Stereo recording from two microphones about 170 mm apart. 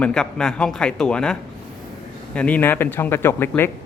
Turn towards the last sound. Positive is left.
turn(degrees=15)  # may be behind; listen again after turning